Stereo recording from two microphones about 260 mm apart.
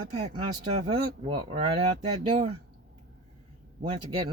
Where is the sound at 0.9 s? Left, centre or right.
Right.